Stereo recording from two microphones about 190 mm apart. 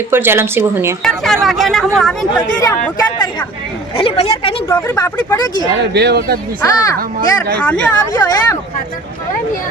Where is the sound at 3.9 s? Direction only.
30° left (ahead or behind).